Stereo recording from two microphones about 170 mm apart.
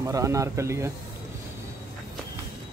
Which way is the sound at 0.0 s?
20° right (ahead or behind).